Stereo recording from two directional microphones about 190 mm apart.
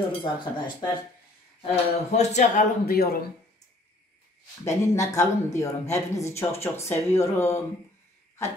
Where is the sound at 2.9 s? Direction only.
55° left (ahead or behind).